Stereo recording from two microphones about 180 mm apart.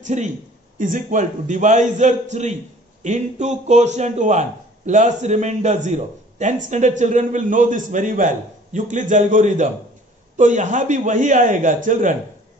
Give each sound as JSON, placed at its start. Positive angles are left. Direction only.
{"t": 0.0, "sound": "a man's voice", "side_deg": -40}